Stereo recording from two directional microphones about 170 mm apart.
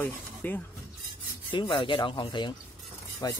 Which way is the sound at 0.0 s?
10° left (ahead or behind).